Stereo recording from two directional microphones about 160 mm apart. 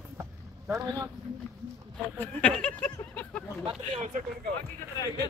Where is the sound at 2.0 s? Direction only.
10° left (ahead or behind).